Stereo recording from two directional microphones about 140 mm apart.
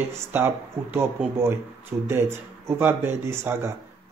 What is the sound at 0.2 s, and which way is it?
Speech, 15° right (ahead or behind).